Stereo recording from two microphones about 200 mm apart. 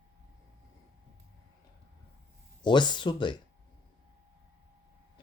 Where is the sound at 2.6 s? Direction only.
20° left (ahead or behind).